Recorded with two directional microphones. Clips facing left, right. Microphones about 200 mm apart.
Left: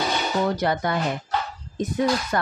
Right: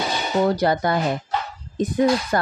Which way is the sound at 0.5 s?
35° right (ahead or behind).